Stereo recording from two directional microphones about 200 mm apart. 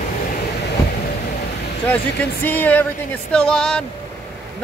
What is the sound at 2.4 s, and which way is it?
Speech, 10° left (ahead or behind).